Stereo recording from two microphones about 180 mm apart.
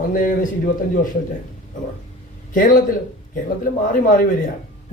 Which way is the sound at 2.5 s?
50° left (ahead or behind).